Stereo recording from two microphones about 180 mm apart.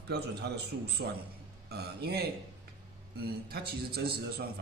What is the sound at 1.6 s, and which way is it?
A man's voice, 65° right (ahead or behind).